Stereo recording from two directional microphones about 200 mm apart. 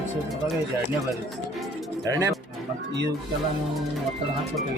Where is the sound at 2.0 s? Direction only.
15° right (ahead or behind).